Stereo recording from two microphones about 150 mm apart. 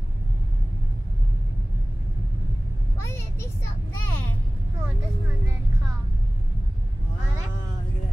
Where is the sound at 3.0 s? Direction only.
15° left (ahead or behind).